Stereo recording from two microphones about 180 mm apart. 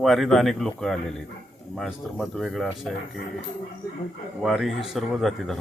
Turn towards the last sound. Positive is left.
turn(degrees=0)  # may be behind; listen again after turning